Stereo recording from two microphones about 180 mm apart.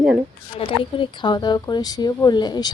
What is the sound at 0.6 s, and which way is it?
A woman's voice, 30° left (ahead or behind).